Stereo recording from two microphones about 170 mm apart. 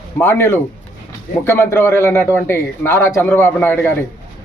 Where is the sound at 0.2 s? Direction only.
10° left (ahead or behind).